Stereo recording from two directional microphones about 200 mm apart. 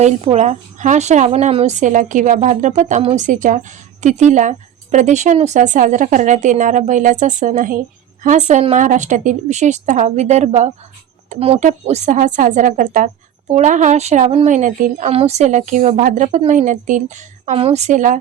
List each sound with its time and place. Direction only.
0.0 s a woman's voice: 35° right (ahead or behind)